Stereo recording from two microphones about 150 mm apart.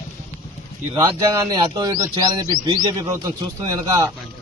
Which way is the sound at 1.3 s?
25° right (ahead or behind).